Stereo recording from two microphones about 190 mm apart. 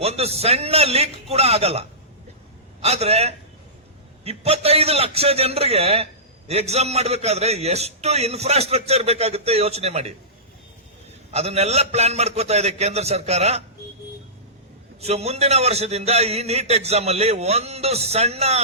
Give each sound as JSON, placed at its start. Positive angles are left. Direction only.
{"t": 0.0, "sound": "a man's voice", "side_deg": -35}
{"t": 11.3, "sound": "a man's voice", "side_deg": -35}
{"t": 15.0, "sound": "a man's voice", "side_deg": -35}